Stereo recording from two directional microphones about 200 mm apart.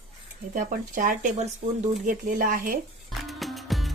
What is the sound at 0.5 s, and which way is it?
Speech, 40° right (ahead or behind).